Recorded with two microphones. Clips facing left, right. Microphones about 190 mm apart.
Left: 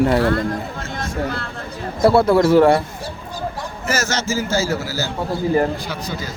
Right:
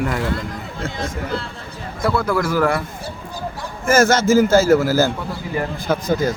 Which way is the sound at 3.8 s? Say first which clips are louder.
Right 8 dB; 50° right (ahead or behind).